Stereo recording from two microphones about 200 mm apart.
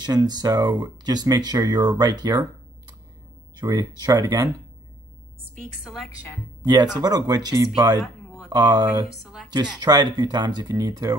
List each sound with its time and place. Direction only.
0.0 s speech: 20° right (ahead or behind)
3.5 s speech: 20° right (ahead or behind)
5.4 s a woman's voice: centre (ahead or behind)
6.6 s speech: 20° right (ahead or behind)